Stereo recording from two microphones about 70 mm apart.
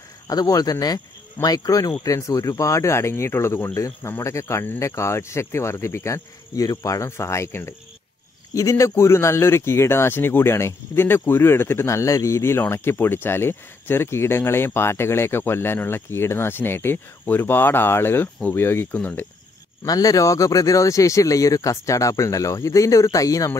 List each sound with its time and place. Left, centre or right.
0.3 s speech: left
7.1 s speech: left
19.9 s speech: left